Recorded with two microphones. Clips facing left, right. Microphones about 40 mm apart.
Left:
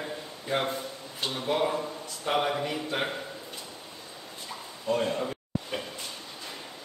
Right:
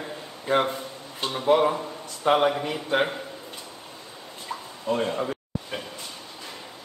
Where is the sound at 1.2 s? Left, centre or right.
Right.